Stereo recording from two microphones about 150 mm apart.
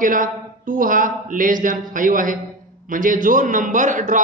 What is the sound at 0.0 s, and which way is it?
A man's voice, 65° right (ahead or behind).